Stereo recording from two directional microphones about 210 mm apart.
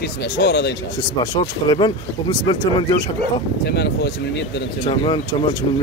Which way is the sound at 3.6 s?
50° left (ahead or behind).